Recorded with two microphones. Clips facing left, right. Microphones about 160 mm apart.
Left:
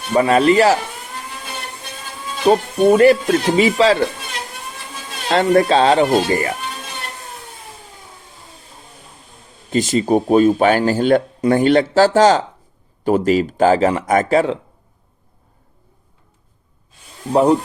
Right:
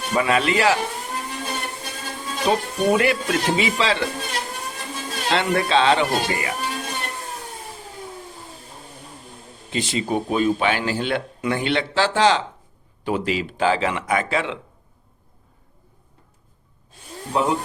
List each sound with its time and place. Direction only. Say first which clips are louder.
0.1 s speech: left 7 dB; 40° left (ahead or behind)
2.5 s speech: left 7 dB; 40° left (ahead or behind)
5.3 s speech: left 7 dB; 40° left (ahead or behind)
9.6 s speech: left 8 dB; 45° left (ahead or behind)
17.3 s speech: left 8 dB; 40° left (ahead or behind)